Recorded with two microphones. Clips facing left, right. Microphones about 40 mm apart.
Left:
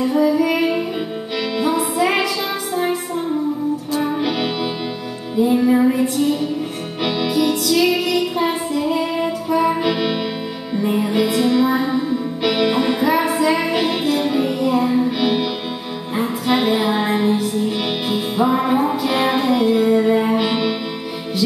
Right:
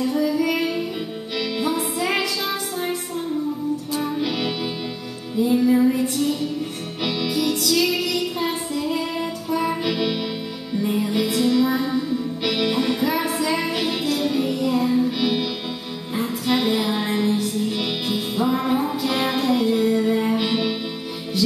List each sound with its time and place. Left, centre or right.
0.0 s music: centre
4.0 s music: centre